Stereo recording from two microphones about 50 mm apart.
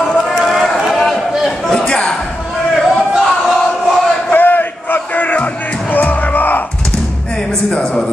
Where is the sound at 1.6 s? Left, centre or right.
Centre.